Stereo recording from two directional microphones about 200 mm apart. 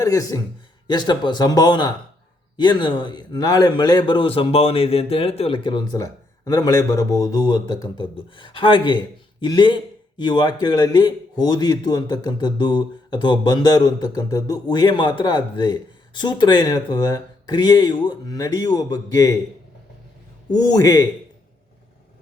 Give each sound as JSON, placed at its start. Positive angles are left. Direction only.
{"t": 0.0, "sound": "a man's voice", "side_deg": 15}
{"t": 20.5, "sound": "a man's voice", "side_deg": 20}